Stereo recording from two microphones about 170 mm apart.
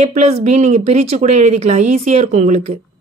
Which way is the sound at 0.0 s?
40° right (ahead or behind).